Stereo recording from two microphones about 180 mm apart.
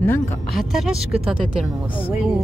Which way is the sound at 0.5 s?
Centre (ahead or behind).